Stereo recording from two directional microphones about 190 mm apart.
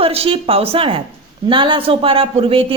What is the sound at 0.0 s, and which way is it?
A woman's voice, 30° right (ahead or behind).